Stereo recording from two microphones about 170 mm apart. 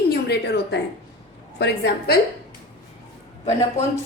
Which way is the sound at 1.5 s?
90° left.